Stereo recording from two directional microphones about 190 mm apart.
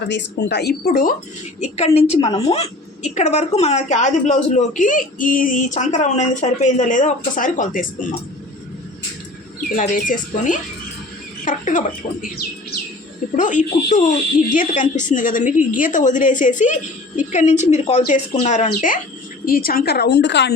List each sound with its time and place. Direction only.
0.1 s a woman's voice: 65° left (ahead or behind); by 1.1 s 50° left (ahead or behind)
1.6 s a woman's voice: 35° left (ahead or behind)
9.6 s speech: 45° left (ahead or behind)
13.3 s a woman's voice: 40° left (ahead or behind); by 20.5 s 65° left (ahead or behind)